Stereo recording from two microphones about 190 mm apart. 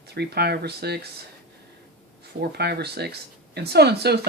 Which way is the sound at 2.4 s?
60° right (ahead or behind).